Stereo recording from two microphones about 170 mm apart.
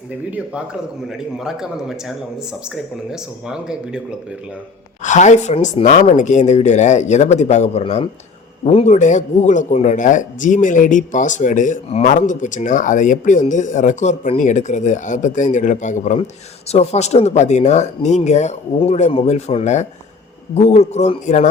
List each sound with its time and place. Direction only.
0.3 s speech: 5° right (ahead or behind)
5.0 s a man's voice: 45° left (ahead or behind)